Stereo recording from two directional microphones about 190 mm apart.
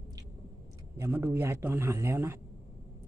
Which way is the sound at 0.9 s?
10° right (ahead or behind).